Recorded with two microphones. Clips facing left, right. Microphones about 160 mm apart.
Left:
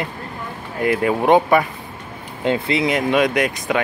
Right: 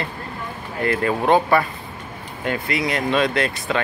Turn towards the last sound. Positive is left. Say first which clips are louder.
# left 2 dB
turn(degrees=15)  # may be behind; listen again after turning